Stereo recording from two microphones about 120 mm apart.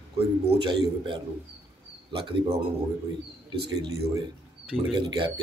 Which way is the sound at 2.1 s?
55° right (ahead or behind).